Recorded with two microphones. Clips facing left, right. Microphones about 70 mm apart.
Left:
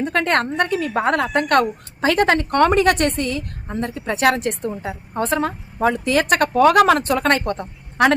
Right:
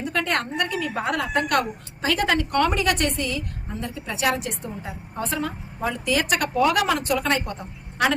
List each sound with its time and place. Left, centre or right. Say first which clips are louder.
0.0 s a woman's voice: left 6 dB; left